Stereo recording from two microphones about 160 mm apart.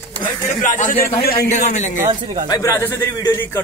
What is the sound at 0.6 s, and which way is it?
Speech, 50° left (ahead or behind).